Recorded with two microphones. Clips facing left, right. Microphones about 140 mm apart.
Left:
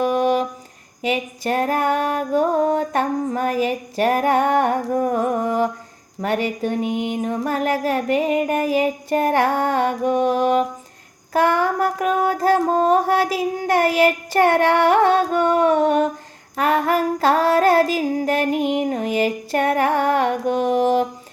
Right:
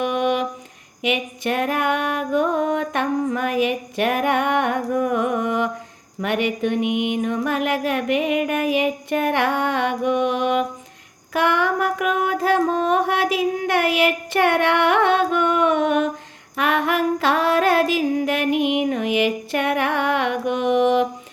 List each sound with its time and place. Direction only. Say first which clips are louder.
0.0 s a sound: left 3 dB; 40° left (ahead or behind)
1.0 s music: left 1 dB; 35° left (ahead or behind)
11.3 s mantra: left 2 dB; 40° left (ahead or behind)
16.6 s female singing: left 2 dB; 40° left (ahead or behind)